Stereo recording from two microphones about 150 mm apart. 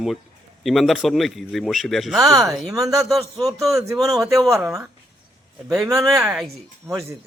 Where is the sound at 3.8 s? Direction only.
20° right (ahead or behind).